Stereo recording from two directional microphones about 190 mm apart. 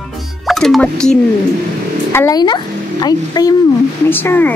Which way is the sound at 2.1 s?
20° left (ahead or behind).